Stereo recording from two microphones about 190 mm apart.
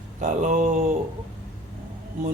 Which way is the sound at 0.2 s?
40° right (ahead or behind).